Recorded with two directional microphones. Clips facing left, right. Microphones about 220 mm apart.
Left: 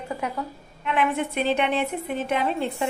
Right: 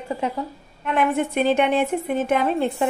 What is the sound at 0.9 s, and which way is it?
A woman's voice, 45° right (ahead or behind).